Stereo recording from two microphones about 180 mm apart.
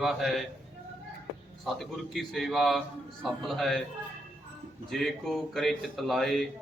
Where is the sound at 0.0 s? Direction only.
Centre (ahead or behind).